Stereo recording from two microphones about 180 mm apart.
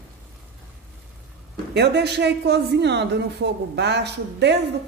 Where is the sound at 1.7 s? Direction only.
70° right (ahead or behind).